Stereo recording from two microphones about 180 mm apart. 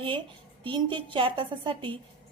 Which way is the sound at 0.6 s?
25° right (ahead or behind).